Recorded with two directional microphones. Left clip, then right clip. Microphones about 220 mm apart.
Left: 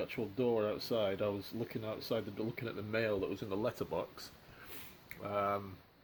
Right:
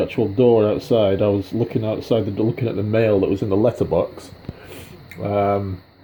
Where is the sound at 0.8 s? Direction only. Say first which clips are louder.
Right 18 dB; 85° left.